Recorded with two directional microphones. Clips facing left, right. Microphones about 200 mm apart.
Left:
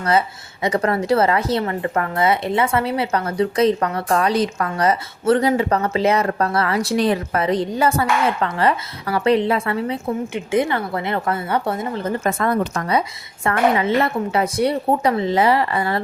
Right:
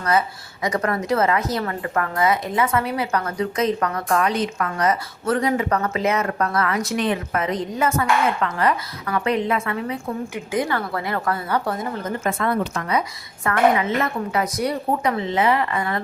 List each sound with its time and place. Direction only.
0.0 s a woman's voice: 30° left (ahead or behind)
12.3 s a woman's voice: 45° left (ahead or behind)